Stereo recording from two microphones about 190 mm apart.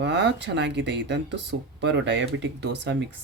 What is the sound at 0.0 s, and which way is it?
Speech, 65° right (ahead or behind).